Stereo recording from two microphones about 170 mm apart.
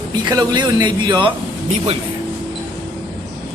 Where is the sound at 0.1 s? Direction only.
25° right (ahead or behind).